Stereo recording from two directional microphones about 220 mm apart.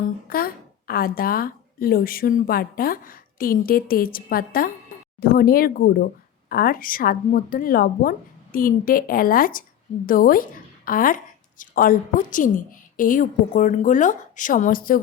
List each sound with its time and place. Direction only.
0.3 s a woman's voice: 40° left (ahead or behind)